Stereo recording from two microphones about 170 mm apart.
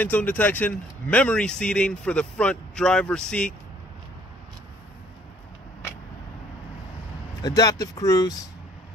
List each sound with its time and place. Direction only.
0.0 s speech: 10° left (ahead or behind)
7.4 s speech: 20° left (ahead or behind)